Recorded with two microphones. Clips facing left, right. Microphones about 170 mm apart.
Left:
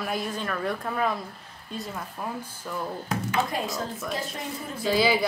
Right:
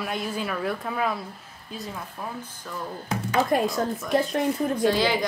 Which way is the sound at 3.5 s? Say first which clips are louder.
Right 8 dB; 55° right (ahead or behind).